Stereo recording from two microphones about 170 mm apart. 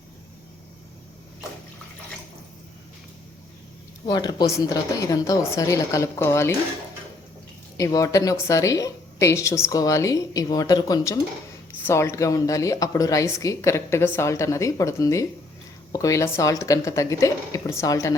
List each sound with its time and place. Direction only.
4.0 s a woman's voice: 25° left (ahead or behind)
7.8 s a woman's voice: 20° left (ahead or behind)